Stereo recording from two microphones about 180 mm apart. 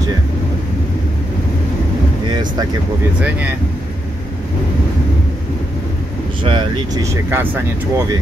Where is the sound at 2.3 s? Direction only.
25° right (ahead or behind).